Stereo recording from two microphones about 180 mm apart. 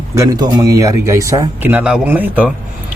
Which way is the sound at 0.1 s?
20° right (ahead or behind).